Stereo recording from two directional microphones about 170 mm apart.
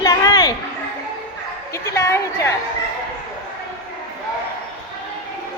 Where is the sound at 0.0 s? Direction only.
20° left (ahead or behind).